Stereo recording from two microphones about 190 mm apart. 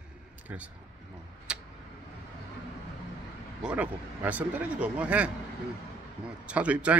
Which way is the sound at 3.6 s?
5° right (ahead or behind).